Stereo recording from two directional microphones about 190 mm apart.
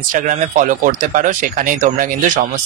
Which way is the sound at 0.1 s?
40° right (ahead or behind).